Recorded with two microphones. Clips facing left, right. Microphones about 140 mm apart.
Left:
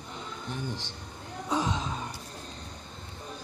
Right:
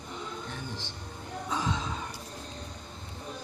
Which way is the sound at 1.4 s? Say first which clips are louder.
Left 3 dB; 15° left (ahead or behind).